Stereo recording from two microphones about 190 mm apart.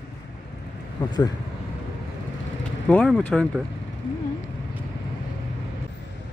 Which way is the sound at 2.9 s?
5° left (ahead or behind).